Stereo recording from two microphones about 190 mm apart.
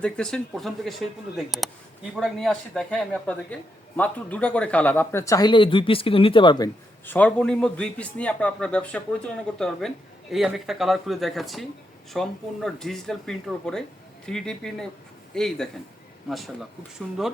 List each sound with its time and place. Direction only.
0.0 s a man's voice: 5° left (ahead or behind); by 6.7 s 25° left (ahead or behind)
7.0 s a man's voice: 10° left (ahead or behind)